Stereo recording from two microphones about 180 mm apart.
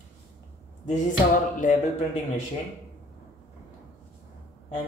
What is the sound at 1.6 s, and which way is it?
Speech, 45° left (ahead or behind).